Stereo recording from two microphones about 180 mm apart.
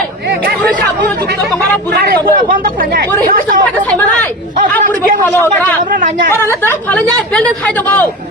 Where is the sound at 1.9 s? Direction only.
60° right (ahead or behind).